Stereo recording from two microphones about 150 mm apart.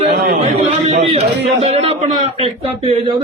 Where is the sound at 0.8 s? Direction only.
45° right (ahead or behind).